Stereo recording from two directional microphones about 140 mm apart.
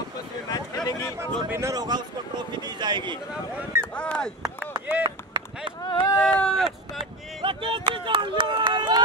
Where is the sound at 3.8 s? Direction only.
5° left (ahead or behind).